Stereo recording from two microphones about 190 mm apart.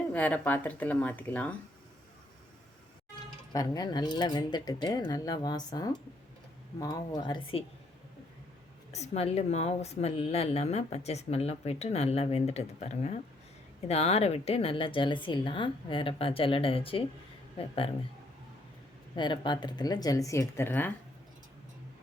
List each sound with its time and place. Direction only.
0.1 s speech: 10° left (ahead or behind)
3.5 s a woman's voice: 20° left (ahead or behind)
8.9 s a woman's voice: 35° left (ahead or behind)
19.1 s a woman's voice: 25° left (ahead or behind)